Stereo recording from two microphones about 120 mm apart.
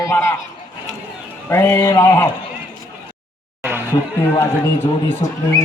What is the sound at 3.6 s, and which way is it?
Music, 20° right (ahead or behind).